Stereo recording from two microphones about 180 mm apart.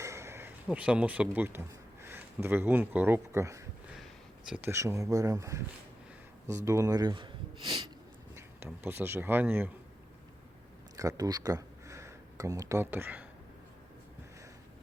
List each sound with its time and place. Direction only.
0.0 s speech: 15° right (ahead or behind)
6.7 s speech: 15° right (ahead or behind)
8.4 s speech: 10° right (ahead or behind)
10.9 s speech: 20° right (ahead or behind)